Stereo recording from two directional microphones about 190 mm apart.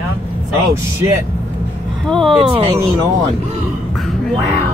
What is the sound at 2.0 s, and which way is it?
Speech, centre (ahead or behind).